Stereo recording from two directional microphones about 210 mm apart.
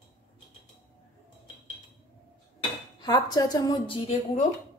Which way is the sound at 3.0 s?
20° left (ahead or behind).